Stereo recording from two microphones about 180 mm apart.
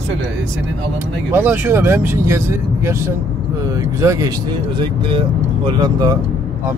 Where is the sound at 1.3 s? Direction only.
10° right (ahead or behind).